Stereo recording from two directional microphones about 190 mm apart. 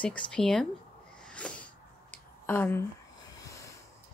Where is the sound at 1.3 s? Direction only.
5° left (ahead or behind).